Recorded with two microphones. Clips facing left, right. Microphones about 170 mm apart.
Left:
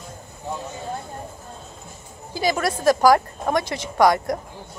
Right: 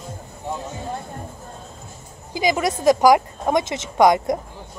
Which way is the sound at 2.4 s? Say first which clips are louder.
Right 2 dB; 15° right (ahead or behind).